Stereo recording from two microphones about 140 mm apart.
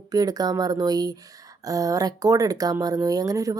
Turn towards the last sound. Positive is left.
turn(degrees=-25)  # may be behind; listen again after turning